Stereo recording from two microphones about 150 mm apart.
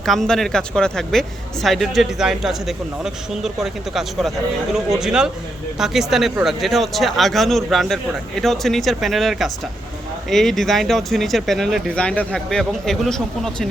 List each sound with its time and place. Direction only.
0.0 s speech: centre (ahead or behind)